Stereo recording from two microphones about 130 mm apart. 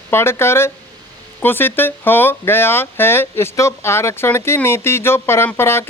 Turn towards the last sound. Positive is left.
turn(degrees=20)  # may be behind; listen again after turning